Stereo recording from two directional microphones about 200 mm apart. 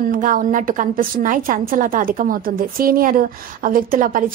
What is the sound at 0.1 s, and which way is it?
A woman's voice, 45° right (ahead or behind).